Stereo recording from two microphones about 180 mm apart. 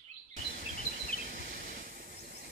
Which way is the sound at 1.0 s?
55° right (ahead or behind).